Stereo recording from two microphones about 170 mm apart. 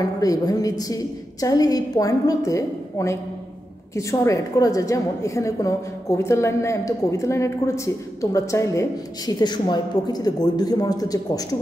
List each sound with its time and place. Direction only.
0.0 s a woman's voice: 20° left (ahead or behind)